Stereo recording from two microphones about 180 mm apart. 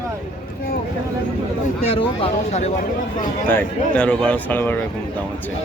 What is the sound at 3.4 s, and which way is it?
Speech, 10° left (ahead or behind).